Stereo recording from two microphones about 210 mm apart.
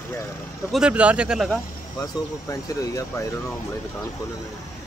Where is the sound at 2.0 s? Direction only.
15° left (ahead or behind).